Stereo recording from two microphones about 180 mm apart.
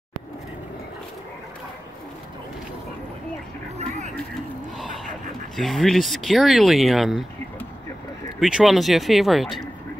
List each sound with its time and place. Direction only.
3.7 s vehicle: 40° right (ahead or behind)
4.7 s a sound: centre (ahead or behind)
5.6 s speech: centre (ahead or behind)
8.4 s speech: 5° right (ahead or behind)